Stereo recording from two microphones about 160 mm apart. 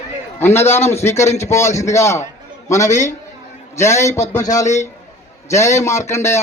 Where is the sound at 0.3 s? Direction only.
15° left (ahead or behind).